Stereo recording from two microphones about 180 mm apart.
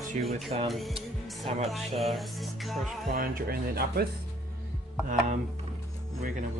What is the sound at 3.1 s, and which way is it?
Speech, 55° right (ahead or behind).